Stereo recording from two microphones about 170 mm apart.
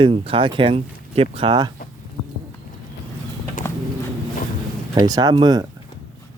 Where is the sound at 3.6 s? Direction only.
15° left (ahead or behind).